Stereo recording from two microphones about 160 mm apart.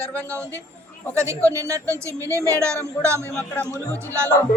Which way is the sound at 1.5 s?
20° right (ahead or behind).